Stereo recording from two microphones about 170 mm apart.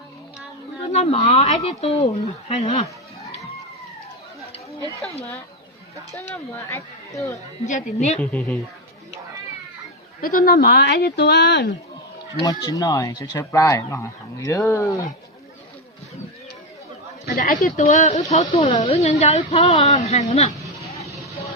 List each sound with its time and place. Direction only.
0.9 s a woman's voice: 35° left (ahead or behind)
6.3 s speech: 15° left (ahead or behind)
7.6 s a woman's voice: 45° left (ahead or behind)
8.2 s speech: 10° left (ahead or behind)
10.2 s speech: 60° left (ahead or behind); by 11.7 s 85° left
12.4 s speech: 20° left (ahead or behind)
17.3 s speech: 50° left (ahead or behind)